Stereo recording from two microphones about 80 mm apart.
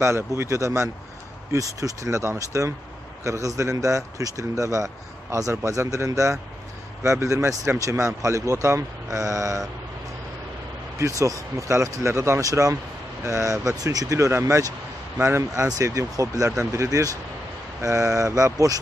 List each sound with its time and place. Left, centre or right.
0.0 s a man's voice: right
11.0 s a man's voice: right